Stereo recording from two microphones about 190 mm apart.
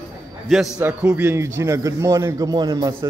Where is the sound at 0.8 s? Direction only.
10° right (ahead or behind).